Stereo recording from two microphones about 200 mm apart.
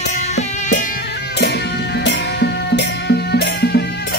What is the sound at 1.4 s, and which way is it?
Music, 55° left (ahead or behind).